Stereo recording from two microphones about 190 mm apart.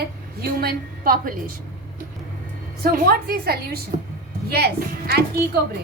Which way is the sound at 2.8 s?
50° right (ahead or behind).